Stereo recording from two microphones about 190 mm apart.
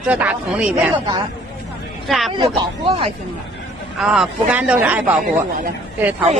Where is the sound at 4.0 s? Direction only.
5° right (ahead or behind).